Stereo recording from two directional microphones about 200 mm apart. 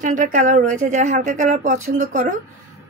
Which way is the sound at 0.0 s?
40° right (ahead or behind).